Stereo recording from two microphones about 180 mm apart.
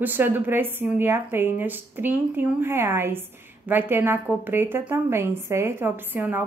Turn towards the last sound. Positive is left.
turn(degrees=-10)  # may be behind; listen again after turning